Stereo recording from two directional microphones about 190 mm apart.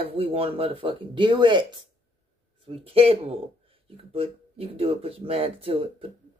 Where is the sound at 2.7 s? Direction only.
30° right (ahead or behind).